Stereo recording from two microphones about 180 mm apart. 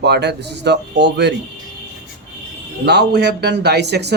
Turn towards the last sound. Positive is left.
turn(degrees=-70)  # may be behind; listen again after turning